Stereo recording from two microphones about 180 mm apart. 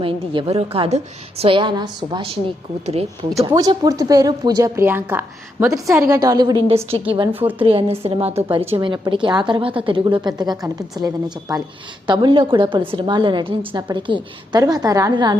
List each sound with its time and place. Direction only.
0.0 s a woman's voice: 30° right (ahead or behind)
3.3 s a woman's voice: 20° right (ahead or behind)